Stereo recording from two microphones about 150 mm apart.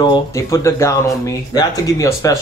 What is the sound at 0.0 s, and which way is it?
Speech, 25° left (ahead or behind).